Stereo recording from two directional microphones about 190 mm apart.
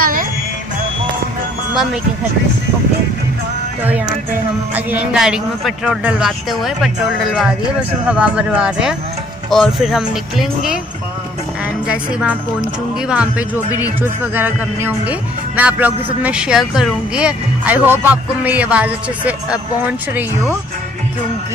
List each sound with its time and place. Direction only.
0.0 s music: 45° right (ahead or behind)
4.7 s a man's voice: 5° right (ahead or behind)
8.1 s a man's voice: 5° right (ahead or behind)
11.9 s a man's voice: 5° right (ahead or behind)